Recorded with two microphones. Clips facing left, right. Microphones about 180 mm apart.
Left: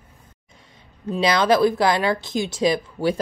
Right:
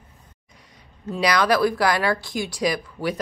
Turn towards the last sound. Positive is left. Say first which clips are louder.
# left 4 dB
turn(degrees=25)  # may be behind; listen again after turning